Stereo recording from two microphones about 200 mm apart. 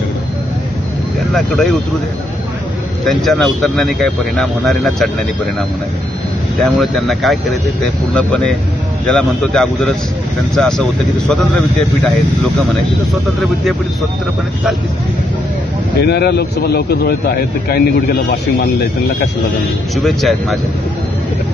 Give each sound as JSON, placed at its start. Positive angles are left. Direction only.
{"t": 1.3, "sound": "speech", "side_deg": 0}
{"t": 3.1, "sound": "speech", "side_deg": 0}
{"t": 6.6, "sound": "speech", "side_deg": 0}
{"t": 16.0, "sound": "a man's voice", "side_deg": 55}
{"t": 20.0, "sound": "speech", "side_deg": 0}